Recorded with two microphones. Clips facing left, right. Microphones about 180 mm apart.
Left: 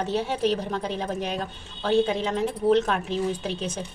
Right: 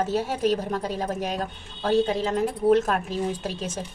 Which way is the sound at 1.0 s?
45° right (ahead or behind).